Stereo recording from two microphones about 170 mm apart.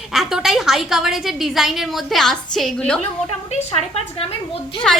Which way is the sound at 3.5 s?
35° left (ahead or behind).